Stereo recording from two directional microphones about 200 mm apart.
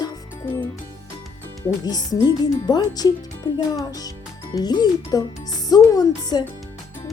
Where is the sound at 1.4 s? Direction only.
20° left (ahead or behind).